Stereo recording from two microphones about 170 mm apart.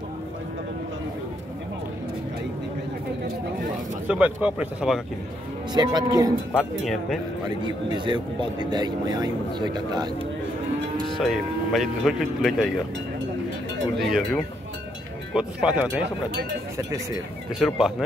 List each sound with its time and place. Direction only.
4.1 s speech: 10° right (ahead or behind)
5.7 s speech: 25° right (ahead or behind)
7.6 s speech: 25° right (ahead or behind)
11.1 s speech: centre (ahead or behind)
13.9 s speech: centre (ahead or behind)
16.7 s speech: 20° right (ahead or behind)
17.6 s speech: centre (ahead or behind)